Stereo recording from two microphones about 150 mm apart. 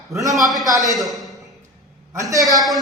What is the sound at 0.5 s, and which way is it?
Speech, centre (ahead or behind).